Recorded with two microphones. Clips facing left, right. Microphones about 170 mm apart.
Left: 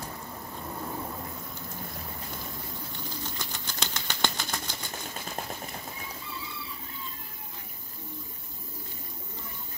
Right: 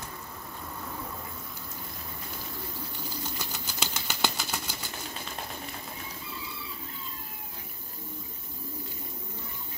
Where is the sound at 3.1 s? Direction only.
10° right (ahead or behind).